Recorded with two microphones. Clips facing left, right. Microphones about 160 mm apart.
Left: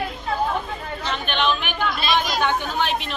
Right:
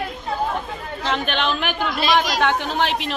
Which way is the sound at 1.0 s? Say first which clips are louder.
Right 2 dB; 90° right.